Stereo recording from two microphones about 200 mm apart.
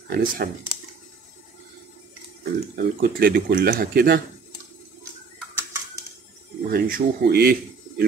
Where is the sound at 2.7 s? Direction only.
50° right (ahead or behind).